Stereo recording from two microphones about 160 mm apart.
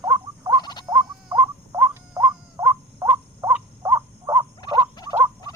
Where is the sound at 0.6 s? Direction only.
25° left (ahead or behind).